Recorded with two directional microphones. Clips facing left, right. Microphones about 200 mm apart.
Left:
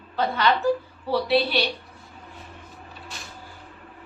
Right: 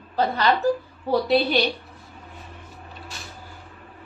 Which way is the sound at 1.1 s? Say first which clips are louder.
Right 2 dB; 45° right (ahead or behind).